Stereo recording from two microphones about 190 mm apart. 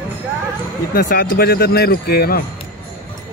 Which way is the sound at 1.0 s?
50° left (ahead or behind).